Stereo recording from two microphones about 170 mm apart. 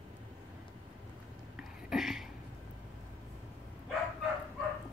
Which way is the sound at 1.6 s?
5° right (ahead or behind).